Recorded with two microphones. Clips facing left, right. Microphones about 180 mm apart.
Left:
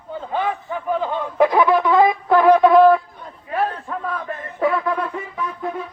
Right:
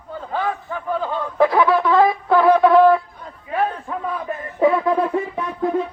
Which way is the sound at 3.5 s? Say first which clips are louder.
Right 1 dB; 5° right (ahead or behind).